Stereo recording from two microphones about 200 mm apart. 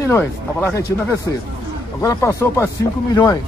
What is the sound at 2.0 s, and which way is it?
Speech, 15° left (ahead or behind).